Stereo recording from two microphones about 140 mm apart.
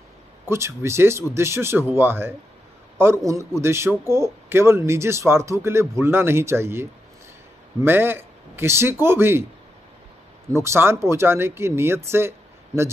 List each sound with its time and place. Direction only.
0.5 s a man's voice: 20° right (ahead or behind)
10.5 s speech: 20° right (ahead or behind)